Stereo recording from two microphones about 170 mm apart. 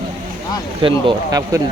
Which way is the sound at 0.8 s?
25° right (ahead or behind).